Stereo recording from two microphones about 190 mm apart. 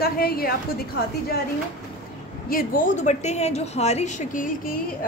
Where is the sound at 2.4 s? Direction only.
45° left (ahead or behind).